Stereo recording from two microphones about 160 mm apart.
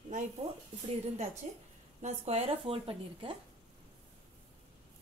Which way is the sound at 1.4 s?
45° right (ahead or behind).